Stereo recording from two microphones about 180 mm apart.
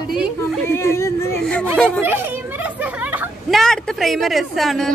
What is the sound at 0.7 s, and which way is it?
Speech, 15° left (ahead or behind).